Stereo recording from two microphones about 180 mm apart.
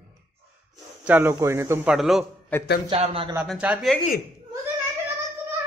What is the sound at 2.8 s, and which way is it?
Speech, 30° right (ahead or behind).